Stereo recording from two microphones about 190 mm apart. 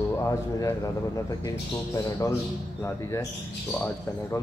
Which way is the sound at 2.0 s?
15° left (ahead or behind).